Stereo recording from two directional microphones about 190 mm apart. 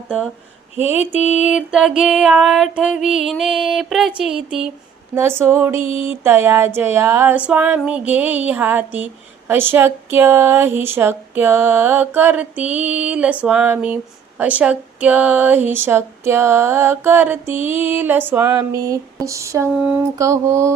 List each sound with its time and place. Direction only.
0.8 s speech: 10° right (ahead or behind)
1.2 s music: 35° left (ahead or behind)
1.5 s female singing: 5° right (ahead or behind)
5.1 s speech: 15° right (ahead or behind)